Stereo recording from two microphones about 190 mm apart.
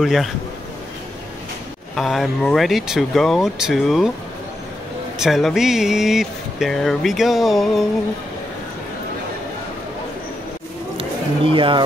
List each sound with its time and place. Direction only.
0.0 s speech: centre (ahead or behind)
2.0 s speech: centre (ahead or behind)
5.2 s speech: centre (ahead or behind)
11.0 s a sound: 25° right (ahead or behind)